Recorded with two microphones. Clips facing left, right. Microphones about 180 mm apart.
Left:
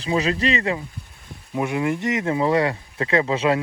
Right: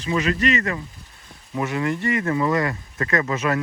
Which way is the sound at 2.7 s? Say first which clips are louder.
Left 2 dB; 15° left (ahead or behind).